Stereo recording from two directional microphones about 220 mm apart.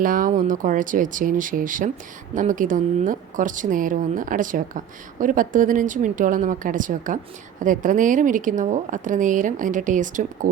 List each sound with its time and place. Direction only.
0.0 s speech: 40° right (ahead or behind)